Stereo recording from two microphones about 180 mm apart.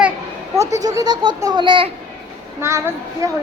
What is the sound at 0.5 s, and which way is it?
Speech, 15° right (ahead or behind).